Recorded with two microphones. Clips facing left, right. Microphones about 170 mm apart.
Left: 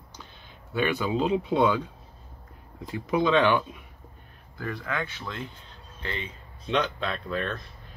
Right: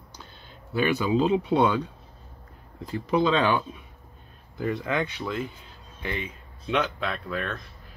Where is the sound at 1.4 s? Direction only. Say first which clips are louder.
Right 1 dB; 75° right (ahead or behind).